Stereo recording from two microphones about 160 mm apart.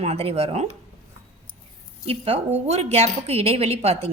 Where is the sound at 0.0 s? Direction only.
40° right (ahead or behind).